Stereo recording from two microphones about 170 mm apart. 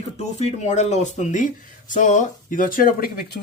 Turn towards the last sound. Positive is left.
turn(degrees=60)  # may be behind; listen again after turning